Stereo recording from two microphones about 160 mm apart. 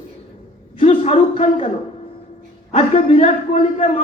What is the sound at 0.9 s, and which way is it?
Speech, 35° left (ahead or behind).